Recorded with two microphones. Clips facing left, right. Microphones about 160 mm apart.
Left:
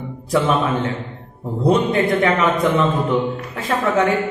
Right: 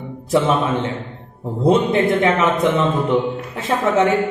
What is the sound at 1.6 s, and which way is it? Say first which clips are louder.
A man's voice: right 1 dB; 25° right (ahead or behind).